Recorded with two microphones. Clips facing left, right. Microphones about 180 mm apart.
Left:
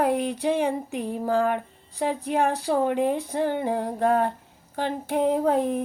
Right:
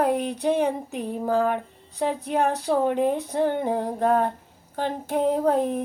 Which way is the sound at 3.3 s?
55° right (ahead or behind).